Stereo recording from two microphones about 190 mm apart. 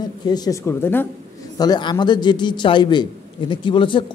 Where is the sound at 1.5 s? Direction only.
20° left (ahead or behind).